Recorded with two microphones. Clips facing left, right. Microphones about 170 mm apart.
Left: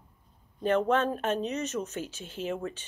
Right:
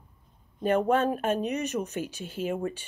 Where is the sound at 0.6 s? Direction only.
10° right (ahead or behind).